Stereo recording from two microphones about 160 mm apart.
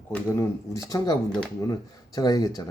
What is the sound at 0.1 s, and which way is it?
Speech, 20° left (ahead or behind).